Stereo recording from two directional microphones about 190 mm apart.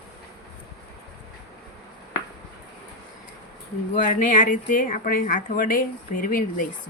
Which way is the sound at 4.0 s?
40° left (ahead or behind).